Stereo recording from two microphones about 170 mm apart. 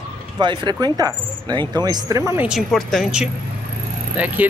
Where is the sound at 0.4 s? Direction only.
25° right (ahead or behind).